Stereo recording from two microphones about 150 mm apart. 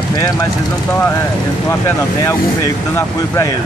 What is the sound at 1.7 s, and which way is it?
Speech, 20° left (ahead or behind).